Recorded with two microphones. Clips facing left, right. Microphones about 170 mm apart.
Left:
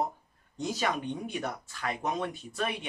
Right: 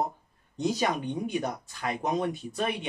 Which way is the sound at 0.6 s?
15° right (ahead or behind).